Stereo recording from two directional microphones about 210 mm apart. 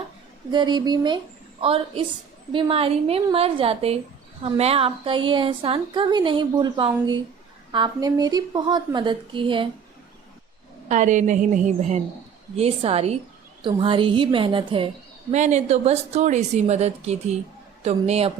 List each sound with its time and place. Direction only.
0.5 s a woman's voice: 20° right (ahead or behind)
10.8 s a woman's voice: 35° right (ahead or behind)